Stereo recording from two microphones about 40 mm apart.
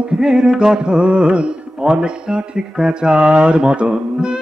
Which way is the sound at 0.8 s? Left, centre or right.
Right.